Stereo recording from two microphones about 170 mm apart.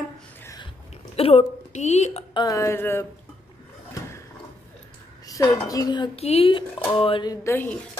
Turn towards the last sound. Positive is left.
turn(degrees=10)  # may be behind; listen again after turning